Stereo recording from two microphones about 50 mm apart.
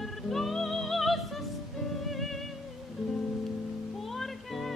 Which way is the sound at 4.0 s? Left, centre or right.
Centre.